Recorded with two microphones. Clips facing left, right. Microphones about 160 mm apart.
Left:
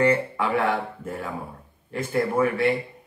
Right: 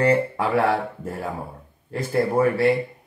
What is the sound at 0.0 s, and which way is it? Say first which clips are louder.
Speech: right 2 dB; 35° right (ahead or behind).